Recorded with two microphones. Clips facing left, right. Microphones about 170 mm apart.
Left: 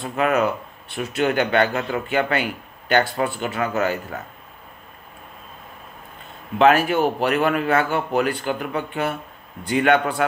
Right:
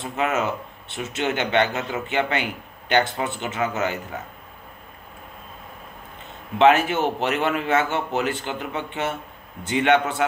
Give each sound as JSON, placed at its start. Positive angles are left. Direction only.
{"t": 0.0, "sound": "speech", "side_deg": -20}
{"t": 6.6, "sound": "speech", "side_deg": -20}